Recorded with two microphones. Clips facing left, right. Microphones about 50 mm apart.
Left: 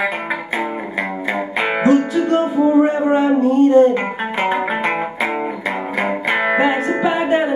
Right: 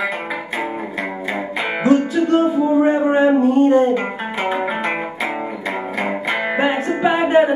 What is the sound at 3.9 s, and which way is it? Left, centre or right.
Music, centre.